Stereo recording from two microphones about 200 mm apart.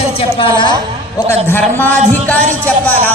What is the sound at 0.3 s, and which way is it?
A woman's voice, 25° left (ahead or behind).